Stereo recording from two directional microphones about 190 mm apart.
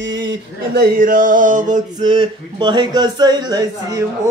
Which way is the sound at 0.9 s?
45° right (ahead or behind).